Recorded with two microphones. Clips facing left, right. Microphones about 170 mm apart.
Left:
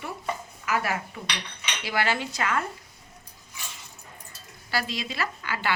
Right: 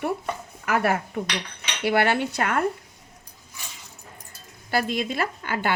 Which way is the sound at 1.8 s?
60° right (ahead or behind).